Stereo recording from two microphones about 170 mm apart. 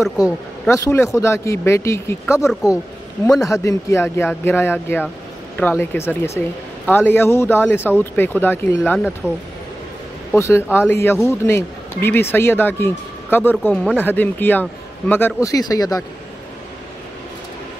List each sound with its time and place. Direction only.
0.2 s speech: 15° left (ahead or behind)
2.2 s speech: 5° right (ahead or behind)
3.3 s speech: 20° left (ahead or behind)
10.3 s speech: 15° left (ahead or behind)